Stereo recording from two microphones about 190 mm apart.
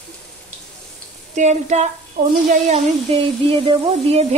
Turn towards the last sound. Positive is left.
turn(degrees=-30)  # may be behind; listen again after turning